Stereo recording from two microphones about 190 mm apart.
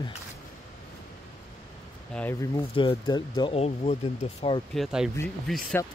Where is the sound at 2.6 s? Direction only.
25° left (ahead or behind).